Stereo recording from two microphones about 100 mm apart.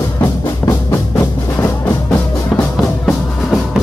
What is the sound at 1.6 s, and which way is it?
Music, 15° left (ahead or behind).